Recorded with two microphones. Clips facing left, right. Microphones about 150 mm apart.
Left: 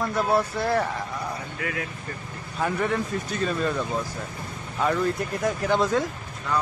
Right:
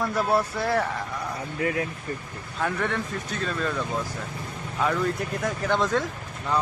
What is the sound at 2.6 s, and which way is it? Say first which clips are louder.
Speech: left 2 dB; 5° left (ahead or behind).